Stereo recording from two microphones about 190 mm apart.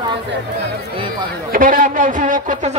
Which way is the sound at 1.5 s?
45° right (ahead or behind).